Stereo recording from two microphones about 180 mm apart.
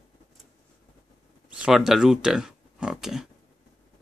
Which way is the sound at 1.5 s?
5° right (ahead or behind).